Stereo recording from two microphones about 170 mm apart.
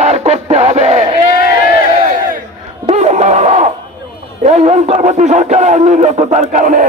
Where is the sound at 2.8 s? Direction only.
40° right (ahead or behind).